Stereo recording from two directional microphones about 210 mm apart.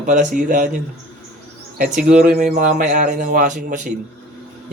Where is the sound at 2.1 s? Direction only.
35° right (ahead or behind).